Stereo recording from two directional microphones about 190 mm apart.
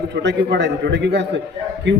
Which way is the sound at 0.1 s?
65° right (ahead or behind).